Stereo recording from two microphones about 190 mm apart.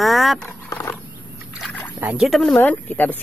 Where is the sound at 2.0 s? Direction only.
5° right (ahead or behind).